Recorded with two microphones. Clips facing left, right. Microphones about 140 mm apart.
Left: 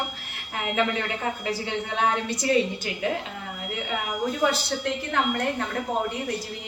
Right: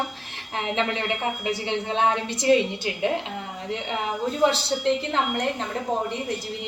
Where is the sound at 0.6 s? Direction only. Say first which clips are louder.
Even; 25° right (ahead or behind).